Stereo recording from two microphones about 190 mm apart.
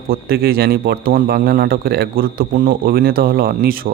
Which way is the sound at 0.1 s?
55° right (ahead or behind).